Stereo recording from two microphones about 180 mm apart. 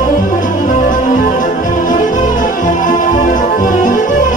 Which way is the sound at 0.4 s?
45° left (ahead or behind).